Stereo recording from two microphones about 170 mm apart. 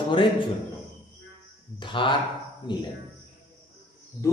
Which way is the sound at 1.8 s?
30° left (ahead or behind).